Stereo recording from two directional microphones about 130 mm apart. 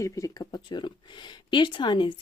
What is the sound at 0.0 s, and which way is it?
Speech, 25° left (ahead or behind).